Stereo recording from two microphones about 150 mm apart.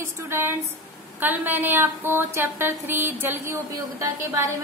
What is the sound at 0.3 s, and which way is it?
A woman's voice, 15° right (ahead or behind).